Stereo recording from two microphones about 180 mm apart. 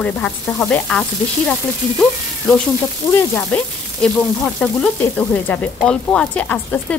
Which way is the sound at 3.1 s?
10° left (ahead or behind).